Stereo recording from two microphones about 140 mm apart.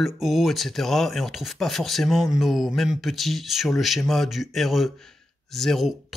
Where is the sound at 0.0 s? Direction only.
Centre (ahead or behind).